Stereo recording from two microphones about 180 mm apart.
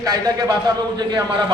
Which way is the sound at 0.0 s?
20° right (ahead or behind).